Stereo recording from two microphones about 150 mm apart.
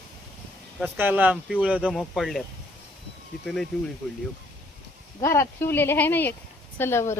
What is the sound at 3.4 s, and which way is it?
Speech, 5° left (ahead or behind).